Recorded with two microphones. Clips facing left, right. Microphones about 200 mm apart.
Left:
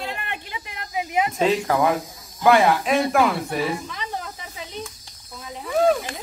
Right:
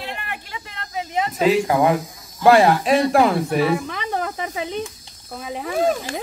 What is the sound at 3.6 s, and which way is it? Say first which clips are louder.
Snake: right 6 dB; 70° right (ahead or behind).